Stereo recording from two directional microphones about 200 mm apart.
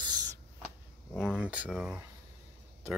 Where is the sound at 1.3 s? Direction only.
5° right (ahead or behind).